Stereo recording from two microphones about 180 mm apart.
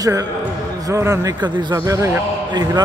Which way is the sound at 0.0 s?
20° right (ahead or behind).